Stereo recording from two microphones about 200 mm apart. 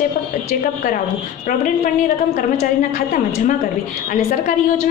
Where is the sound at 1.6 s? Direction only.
40° left (ahead or behind).